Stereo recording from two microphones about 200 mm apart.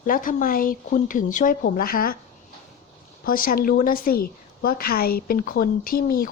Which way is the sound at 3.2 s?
45° left (ahead or behind).